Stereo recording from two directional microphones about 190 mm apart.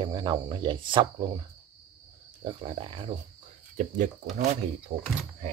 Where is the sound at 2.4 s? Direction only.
30° right (ahead or behind).